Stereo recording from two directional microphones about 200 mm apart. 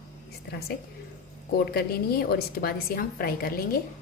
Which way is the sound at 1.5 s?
50° left (ahead or behind).